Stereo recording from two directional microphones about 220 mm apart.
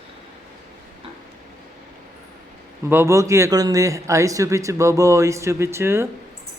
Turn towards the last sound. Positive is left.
turn(degrees=-10)  # may be behind; listen again after turning